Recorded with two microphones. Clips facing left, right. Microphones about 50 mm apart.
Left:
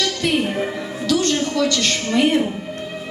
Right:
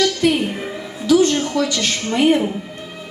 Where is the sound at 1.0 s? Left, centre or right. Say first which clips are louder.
Right 6 dB; centre.